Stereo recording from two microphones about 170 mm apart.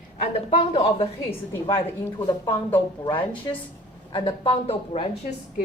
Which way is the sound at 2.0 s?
20° left (ahead or behind).